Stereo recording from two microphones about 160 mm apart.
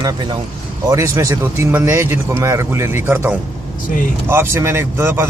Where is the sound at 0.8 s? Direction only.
20° right (ahead or behind).